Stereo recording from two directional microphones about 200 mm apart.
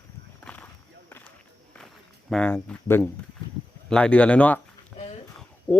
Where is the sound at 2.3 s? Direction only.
5° left (ahead or behind).